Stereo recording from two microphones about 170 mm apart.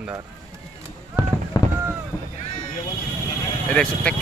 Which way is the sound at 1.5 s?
25° left (ahead or behind).